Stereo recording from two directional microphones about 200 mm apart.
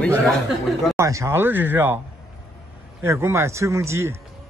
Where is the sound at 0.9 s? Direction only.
15° right (ahead or behind).